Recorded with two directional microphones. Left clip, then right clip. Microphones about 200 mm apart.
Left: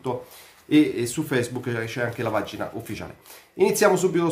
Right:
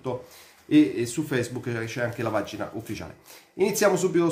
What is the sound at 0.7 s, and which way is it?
Speech, 10° left (ahead or behind).